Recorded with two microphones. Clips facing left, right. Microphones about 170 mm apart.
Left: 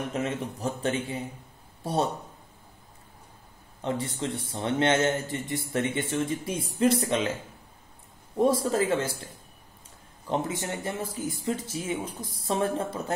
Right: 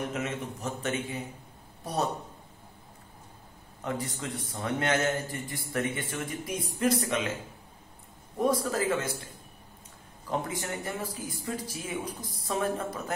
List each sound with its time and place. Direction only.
0.1 s a man's voice: 30° left (ahead or behind)
3.8 s a man's voice: 30° left (ahead or behind)
8.4 s a man's voice: 25° left (ahead or behind)
10.3 s a man's voice: 25° left (ahead or behind)